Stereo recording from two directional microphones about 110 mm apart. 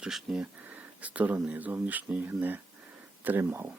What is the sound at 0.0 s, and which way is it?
Speech, 5° right (ahead or behind).